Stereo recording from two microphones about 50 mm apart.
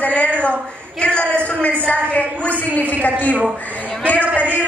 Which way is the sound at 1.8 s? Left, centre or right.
Left.